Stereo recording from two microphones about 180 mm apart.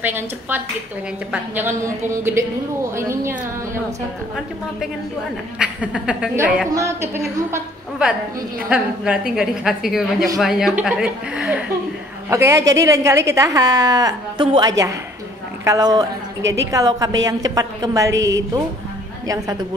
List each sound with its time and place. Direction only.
0.0 s a woman's voice: 10° right (ahead or behind)
5.6 s a woman's voice: 5° right (ahead or behind)
8.0 s a woman's voice: 5° right (ahead or behind)
12.3 s a woman's voice: 15° right (ahead or behind)